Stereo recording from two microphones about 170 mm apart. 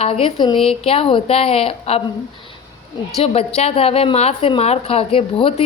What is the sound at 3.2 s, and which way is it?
A woman's voice, 35° left (ahead or behind).